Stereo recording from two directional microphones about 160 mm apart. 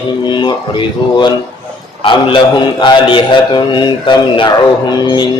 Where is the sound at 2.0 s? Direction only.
30° left (ahead or behind).